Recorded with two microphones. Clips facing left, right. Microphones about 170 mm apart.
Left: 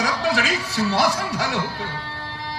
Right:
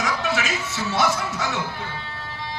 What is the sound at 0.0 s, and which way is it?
A man's voice, 35° left (ahead or behind).